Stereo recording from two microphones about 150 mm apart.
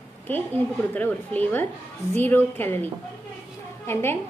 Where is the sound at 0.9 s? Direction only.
10° left (ahead or behind).